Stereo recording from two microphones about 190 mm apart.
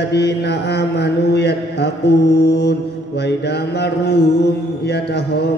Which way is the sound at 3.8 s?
60° left (ahead or behind).